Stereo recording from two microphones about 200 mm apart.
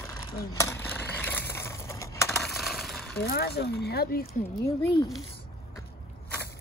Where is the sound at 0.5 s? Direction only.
15° left (ahead or behind).